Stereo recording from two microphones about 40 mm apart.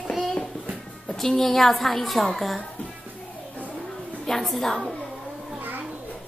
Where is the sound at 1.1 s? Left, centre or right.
Centre.